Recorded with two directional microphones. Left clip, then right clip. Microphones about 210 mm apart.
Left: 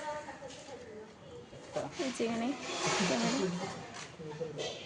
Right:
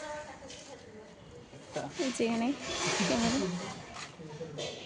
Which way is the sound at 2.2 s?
15° right (ahead or behind).